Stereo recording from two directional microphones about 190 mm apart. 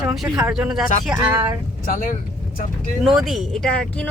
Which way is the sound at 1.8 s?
45° left (ahead or behind).